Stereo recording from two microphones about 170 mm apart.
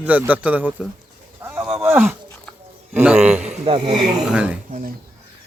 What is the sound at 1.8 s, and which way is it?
A man's voice, 5° right (ahead or behind).